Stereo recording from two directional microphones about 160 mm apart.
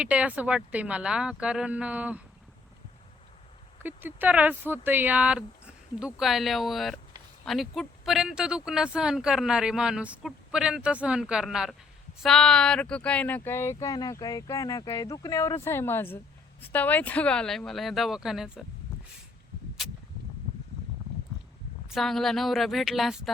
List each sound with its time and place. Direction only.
0.0 s speech: 5° right (ahead or behind)
3.8 s speech: 10° right (ahead or behind)
21.8 s speech: centre (ahead or behind)